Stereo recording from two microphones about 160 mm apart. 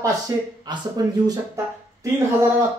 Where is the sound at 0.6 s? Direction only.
25° right (ahead or behind).